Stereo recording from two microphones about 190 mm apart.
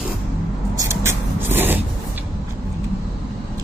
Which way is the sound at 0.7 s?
15° right (ahead or behind).